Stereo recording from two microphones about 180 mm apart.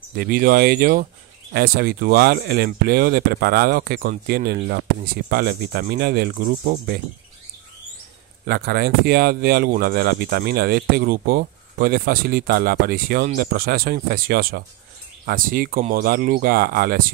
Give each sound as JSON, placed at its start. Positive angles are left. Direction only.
{"t": 0.1, "sound": "speech", "side_deg": -55}
{"t": 8.5, "sound": "speech", "side_deg": -60}